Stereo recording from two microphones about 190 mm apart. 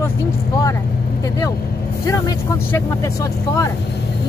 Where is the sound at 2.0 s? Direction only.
15° left (ahead or behind).